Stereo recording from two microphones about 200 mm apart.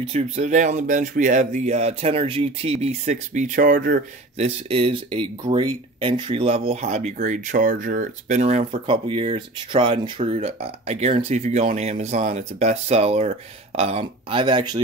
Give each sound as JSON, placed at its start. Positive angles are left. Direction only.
{"t": 0.0, "sound": "speech", "side_deg": -35}
{"t": 4.4, "sound": "speech", "side_deg": -30}